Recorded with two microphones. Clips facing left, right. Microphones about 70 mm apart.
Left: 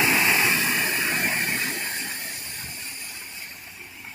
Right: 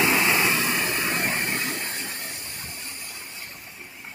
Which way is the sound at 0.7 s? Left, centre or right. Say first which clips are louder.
Even; centre.